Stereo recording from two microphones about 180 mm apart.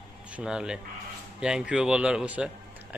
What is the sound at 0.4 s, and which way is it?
A man's voice, 5° right (ahead or behind).